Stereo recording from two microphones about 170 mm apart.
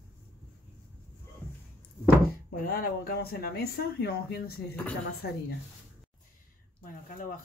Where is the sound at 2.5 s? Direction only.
55° left (ahead or behind).